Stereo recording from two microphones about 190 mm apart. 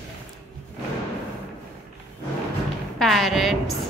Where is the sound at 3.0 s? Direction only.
Centre (ahead or behind).